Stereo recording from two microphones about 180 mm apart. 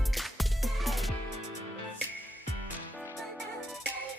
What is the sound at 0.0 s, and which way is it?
Music, centre (ahead or behind).